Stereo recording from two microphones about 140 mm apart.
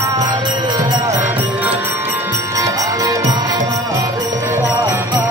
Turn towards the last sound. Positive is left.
turn(degrees=-25)  # may be behind; listen again after turning